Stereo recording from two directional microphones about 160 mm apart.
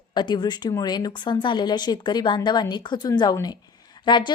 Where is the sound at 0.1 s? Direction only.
30° left (ahead or behind).